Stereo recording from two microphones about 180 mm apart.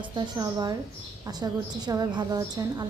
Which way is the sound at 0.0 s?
20° right (ahead or behind).